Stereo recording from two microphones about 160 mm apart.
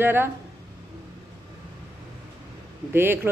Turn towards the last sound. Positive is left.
turn(degrees=-15)  # may be behind; listen again after turning